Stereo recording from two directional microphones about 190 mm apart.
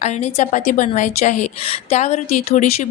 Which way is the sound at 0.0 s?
35° left (ahead or behind).